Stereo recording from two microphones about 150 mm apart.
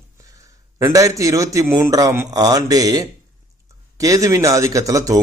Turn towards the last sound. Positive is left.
turn(degrees=-20)  # may be behind; listen again after turning